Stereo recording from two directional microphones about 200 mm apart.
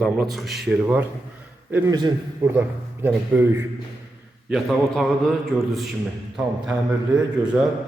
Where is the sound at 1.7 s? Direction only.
20° right (ahead or behind).